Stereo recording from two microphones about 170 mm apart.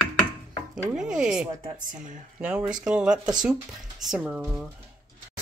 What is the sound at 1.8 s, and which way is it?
Speech, 50° right (ahead or behind).